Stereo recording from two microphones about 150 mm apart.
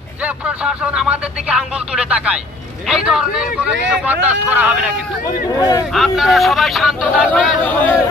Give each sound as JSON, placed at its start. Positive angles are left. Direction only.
{"t": 0.7, "sound": "speech", "side_deg": -5}
{"t": 5.6, "sound": "speech", "side_deg": 25}
{"t": 5.9, "sound": "speech", "side_deg": 0}
{"t": 7.2, "sound": "speech", "side_deg": 10}